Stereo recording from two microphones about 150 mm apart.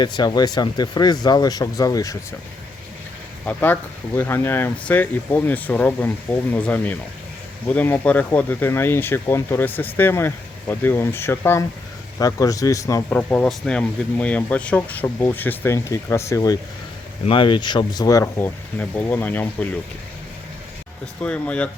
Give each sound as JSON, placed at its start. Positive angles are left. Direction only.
{"t": 0.0, "sound": "speech", "side_deg": 30}
{"t": 3.4, "sound": "speech", "side_deg": 10}
{"t": 13.1, "sound": "speech", "side_deg": 10}
{"t": 17.2, "sound": "speech", "side_deg": 35}
{"t": 21.2, "sound": "speech", "side_deg": 5}